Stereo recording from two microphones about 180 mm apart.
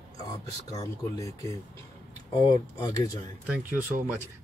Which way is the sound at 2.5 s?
25° left (ahead or behind).